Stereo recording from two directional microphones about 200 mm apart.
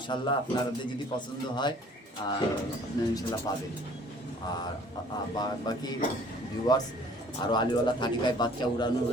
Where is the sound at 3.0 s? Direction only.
20° left (ahead or behind).